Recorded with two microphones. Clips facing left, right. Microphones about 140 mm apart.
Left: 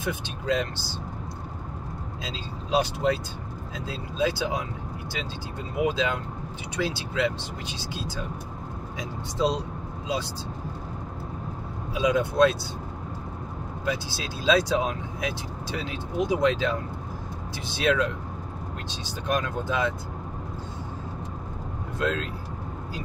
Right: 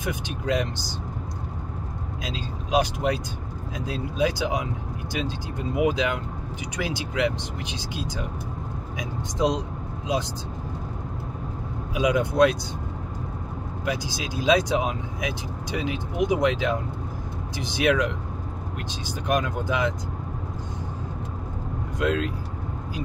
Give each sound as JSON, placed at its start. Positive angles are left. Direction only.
{"t": 0.0, "sound": "speech", "side_deg": -15}
{"t": 2.2, "sound": "speech", "side_deg": -15}
{"t": 5.8, "sound": "speech", "side_deg": -15}
{"t": 11.9, "sound": "speech", "side_deg": -15}
{"t": 13.8, "sound": "speech", "side_deg": -15}
{"t": 19.2, "sound": "speech", "side_deg": -15}
{"t": 21.9, "sound": "speech", "side_deg": -15}